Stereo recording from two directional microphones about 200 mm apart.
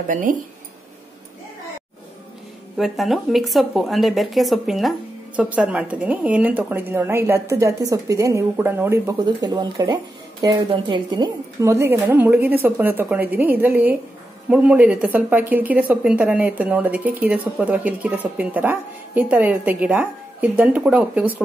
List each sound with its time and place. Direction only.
0.1 s speech: 40° right (ahead or behind)
2.8 s a woman's voice: centre (ahead or behind)